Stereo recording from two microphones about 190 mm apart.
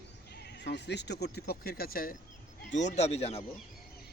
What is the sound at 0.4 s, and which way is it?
Speech, 65° left (ahead or behind).